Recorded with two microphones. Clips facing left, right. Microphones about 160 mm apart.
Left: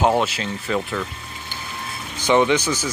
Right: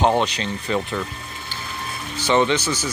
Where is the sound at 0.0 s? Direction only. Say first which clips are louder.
Even; 5° left (ahead or behind).